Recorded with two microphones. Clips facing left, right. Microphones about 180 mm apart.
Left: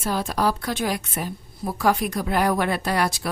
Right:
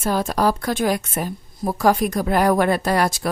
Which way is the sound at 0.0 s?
45° right (ahead or behind).